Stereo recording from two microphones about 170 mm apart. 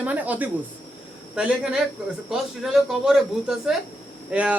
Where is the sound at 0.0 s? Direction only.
10° right (ahead or behind).